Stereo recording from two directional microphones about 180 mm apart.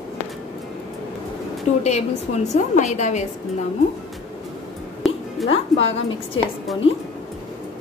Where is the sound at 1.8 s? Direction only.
40° left (ahead or behind).